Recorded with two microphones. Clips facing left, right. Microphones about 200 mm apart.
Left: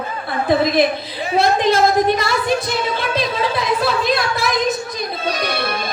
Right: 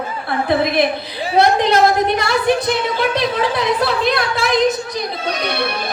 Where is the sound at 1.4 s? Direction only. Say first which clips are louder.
Right 2 dB; 65° right (ahead or behind).